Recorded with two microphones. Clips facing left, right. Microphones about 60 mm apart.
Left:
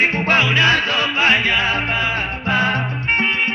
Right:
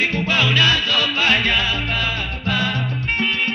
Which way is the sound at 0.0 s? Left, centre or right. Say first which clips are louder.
Left 3 dB; left.